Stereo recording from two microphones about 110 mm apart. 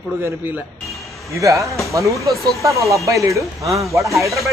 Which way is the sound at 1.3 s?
30° right (ahead or behind).